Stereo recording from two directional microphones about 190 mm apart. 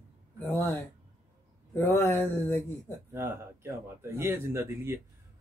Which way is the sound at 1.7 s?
10° left (ahead or behind).